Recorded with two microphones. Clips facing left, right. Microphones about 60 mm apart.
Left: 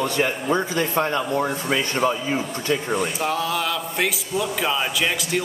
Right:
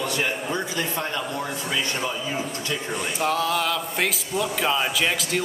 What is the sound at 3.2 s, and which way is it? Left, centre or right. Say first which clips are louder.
Speech: even; centre.